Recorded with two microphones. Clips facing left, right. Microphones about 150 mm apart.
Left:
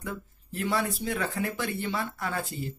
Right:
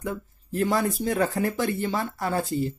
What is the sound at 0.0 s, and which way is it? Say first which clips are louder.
Speech: right 5 dB; 40° right (ahead or behind).